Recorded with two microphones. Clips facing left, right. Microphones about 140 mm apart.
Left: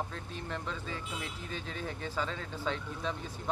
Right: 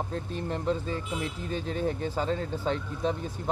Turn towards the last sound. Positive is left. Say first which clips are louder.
# right 7 dB
turn(degrees=-40)  # may be behind; listen again after turning